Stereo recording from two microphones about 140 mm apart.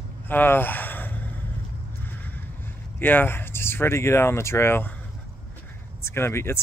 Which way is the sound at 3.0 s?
15° left (ahead or behind).